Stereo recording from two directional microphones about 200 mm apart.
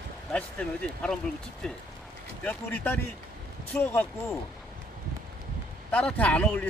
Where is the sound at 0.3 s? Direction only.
5° left (ahead or behind).